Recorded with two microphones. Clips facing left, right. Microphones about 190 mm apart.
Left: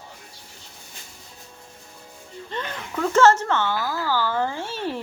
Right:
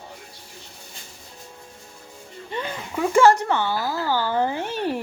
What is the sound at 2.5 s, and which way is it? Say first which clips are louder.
Speech: right 2 dB; 10° right (ahead or behind).